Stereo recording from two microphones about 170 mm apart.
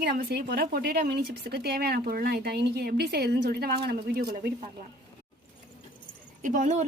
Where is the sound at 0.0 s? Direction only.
60° right (ahead or behind).